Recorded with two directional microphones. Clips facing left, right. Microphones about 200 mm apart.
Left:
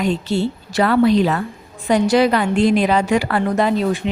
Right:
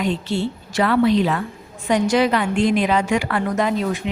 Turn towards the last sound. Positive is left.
turn(degrees=35)  # may be behind; listen again after turning